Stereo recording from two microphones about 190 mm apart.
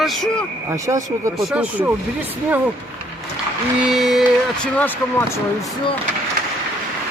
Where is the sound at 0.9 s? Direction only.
15° right (ahead or behind).